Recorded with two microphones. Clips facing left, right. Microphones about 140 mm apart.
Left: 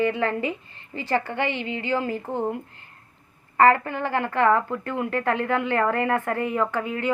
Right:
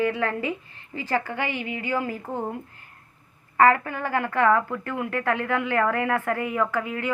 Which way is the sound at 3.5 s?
5° right (ahead or behind).